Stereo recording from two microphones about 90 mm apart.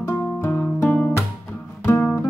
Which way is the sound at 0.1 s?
25° left (ahead or behind).